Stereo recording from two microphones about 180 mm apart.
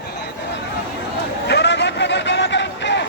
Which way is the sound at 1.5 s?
75° left (ahead or behind).